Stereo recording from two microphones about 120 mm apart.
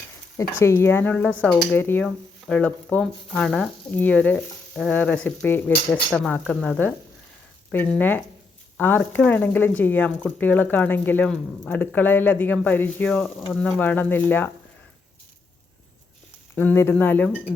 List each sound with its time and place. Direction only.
0.3 s speech: 25° left (ahead or behind)
13.1 s speech: 5° left (ahead or behind)
16.6 s speech: 20° left (ahead or behind)